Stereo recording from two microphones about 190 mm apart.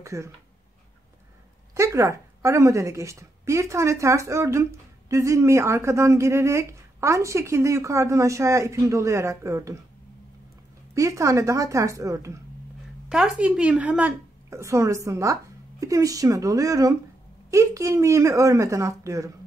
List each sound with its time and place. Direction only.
0.0 s speech: 15° right (ahead or behind)
1.7 s speech: 15° right (ahead or behind)
11.0 s speech: 15° right (ahead or behind)
13.1 s speech: 5° right (ahead or behind)